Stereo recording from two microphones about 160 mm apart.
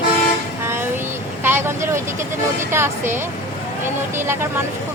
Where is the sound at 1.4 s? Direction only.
15° right (ahead or behind).